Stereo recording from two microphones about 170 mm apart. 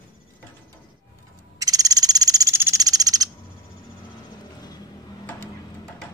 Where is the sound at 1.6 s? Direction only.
20° right (ahead or behind).